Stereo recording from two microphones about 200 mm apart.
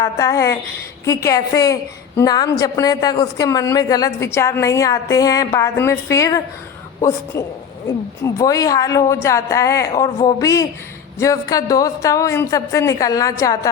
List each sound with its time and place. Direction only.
0.0 s a woman's voice: 15° left (ahead or behind)